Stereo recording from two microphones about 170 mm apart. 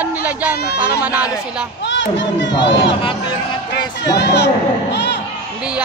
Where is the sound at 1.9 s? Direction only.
90° left.